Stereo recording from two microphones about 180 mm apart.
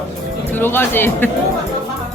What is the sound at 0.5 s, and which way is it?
Speech, 10° left (ahead or behind).